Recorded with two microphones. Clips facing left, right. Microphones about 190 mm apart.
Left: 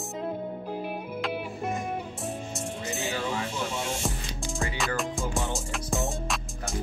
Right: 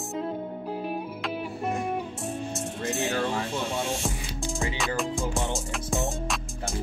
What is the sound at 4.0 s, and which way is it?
Music, centre (ahead or behind).